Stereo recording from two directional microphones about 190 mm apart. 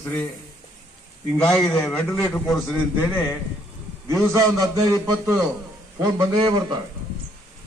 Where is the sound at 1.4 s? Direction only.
5° left (ahead or behind).